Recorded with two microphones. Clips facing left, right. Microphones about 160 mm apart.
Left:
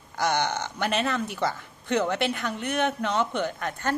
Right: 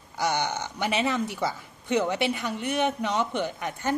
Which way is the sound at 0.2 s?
10° right (ahead or behind).